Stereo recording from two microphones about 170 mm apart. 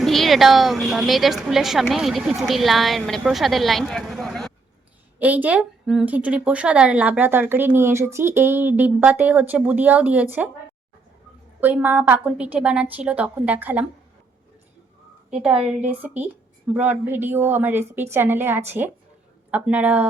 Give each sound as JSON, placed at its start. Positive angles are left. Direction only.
{"t": 0.0, "sound": "a woman's voice", "side_deg": 0}
{"t": 5.2, "sound": "a woman's voice", "side_deg": -10}
{"t": 11.6, "sound": "a woman's voice", "side_deg": -10}
{"t": 15.3, "sound": "a woman's voice", "side_deg": -5}